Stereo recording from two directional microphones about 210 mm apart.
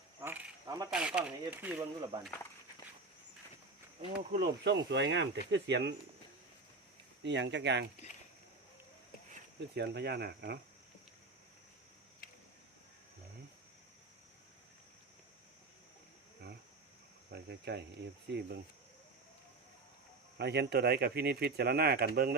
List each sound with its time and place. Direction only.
0.2 s a sound: 10° right (ahead or behind)
0.9 s speech: 5° right (ahead or behind)
4.3 s speech: 50° right (ahead or behind)
7.2 s speech: 55° right (ahead or behind)
9.7 s speech: 50° right (ahead or behind)
17.3 s a sound: 55° right (ahead or behind)
18.3 s speech: 55° right (ahead or behind)
20.4 s speech: 55° right (ahead or behind)